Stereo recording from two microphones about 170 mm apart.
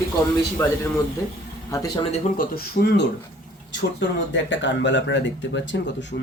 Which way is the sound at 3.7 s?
90° left.